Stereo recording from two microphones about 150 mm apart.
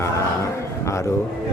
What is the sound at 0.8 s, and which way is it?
Speech, 20° left (ahead or behind).